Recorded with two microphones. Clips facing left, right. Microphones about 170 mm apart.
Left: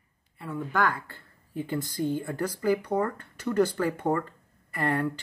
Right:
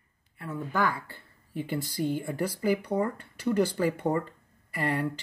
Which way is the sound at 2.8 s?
55° left (ahead or behind).